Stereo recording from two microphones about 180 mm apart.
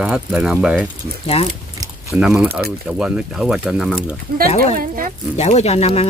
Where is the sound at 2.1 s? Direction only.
5° right (ahead or behind).